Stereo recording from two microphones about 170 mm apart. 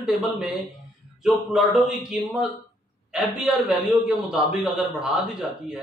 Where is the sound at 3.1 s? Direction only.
5° right (ahead or behind).